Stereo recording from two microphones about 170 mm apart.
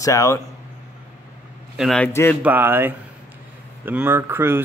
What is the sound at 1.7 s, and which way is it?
Speech, 5° left (ahead or behind).